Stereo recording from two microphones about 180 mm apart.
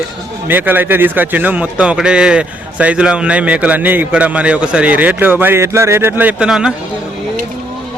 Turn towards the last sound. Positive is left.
turn(degrees=-5)  # may be behind; listen again after turning